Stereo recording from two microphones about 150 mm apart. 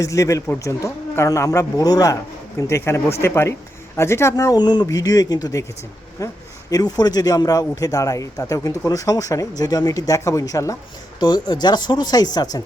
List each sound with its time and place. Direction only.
0.0 s a man's voice: 20° left (ahead or behind)